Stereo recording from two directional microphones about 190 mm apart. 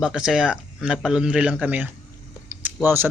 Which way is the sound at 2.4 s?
10° right (ahead or behind).